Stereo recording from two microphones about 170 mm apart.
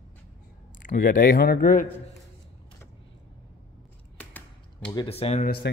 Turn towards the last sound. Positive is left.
turn(degrees=90)